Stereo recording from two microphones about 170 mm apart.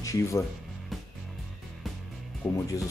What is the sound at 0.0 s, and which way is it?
Speech, 20° left (ahead or behind).